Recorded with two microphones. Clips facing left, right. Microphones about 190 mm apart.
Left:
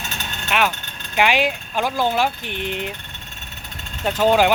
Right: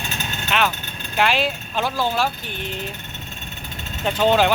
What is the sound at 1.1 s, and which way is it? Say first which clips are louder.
Speech: left 2 dB; 15° left (ahead or behind).